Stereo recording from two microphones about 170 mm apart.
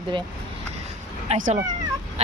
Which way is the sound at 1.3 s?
45° right (ahead or behind).